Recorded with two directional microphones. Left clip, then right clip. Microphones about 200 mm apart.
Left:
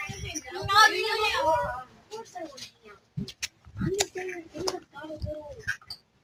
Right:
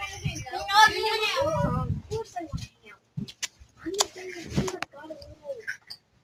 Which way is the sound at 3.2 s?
Centre (ahead or behind).